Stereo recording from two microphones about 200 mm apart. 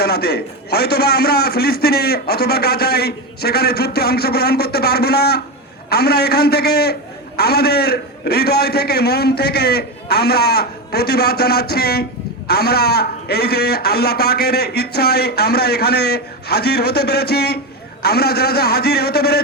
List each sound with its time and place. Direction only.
0.0 s a man's voice: 55° left (ahead or behind)